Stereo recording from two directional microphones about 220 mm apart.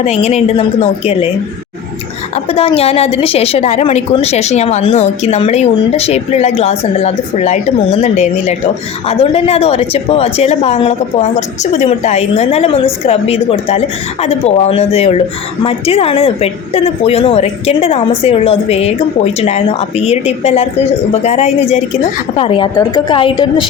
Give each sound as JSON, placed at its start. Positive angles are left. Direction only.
{"t": 0.0, "sound": "a woman's voice", "side_deg": 30}
{"t": 2.3, "sound": "a woman's voice", "side_deg": 25}